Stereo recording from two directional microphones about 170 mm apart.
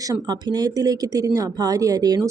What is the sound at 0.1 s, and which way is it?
Speech, 25° right (ahead or behind).